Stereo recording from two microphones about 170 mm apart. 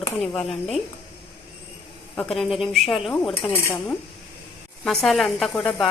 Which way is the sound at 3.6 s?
15° left (ahead or behind).